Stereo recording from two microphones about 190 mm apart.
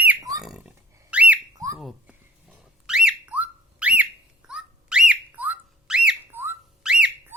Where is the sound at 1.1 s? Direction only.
5° right (ahead or behind).